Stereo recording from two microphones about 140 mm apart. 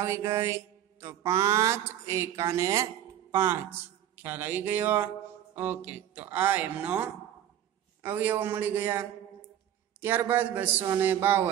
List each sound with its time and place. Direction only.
0.0 s speech: 20° right (ahead or behind)